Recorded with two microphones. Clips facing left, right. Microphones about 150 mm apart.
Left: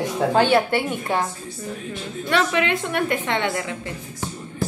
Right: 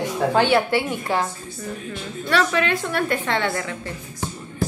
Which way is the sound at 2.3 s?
20° left (ahead or behind).